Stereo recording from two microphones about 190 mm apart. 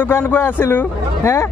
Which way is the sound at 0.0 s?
10° left (ahead or behind).